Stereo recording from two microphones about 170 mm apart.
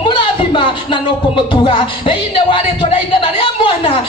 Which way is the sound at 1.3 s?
30° left (ahead or behind).